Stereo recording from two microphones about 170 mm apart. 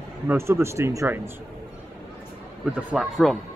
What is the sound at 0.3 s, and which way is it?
Speech, 15° right (ahead or behind).